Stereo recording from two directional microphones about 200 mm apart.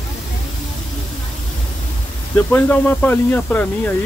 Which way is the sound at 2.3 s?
10° left (ahead or behind).